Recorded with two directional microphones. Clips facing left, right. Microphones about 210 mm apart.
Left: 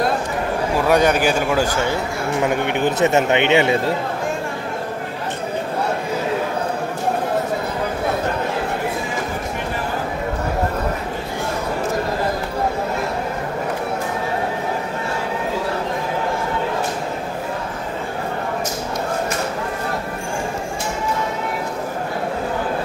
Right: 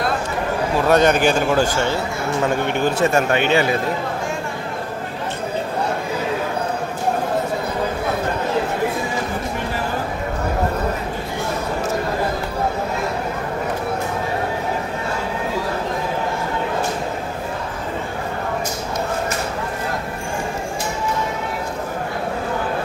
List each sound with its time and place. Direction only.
0.8 s a man's voice: 10° left (ahead or behind)